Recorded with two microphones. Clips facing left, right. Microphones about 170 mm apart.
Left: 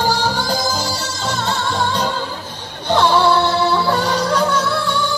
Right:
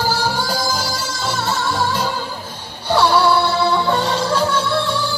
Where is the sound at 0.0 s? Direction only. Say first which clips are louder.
Left 1 dB; 10° right (ahead or behind).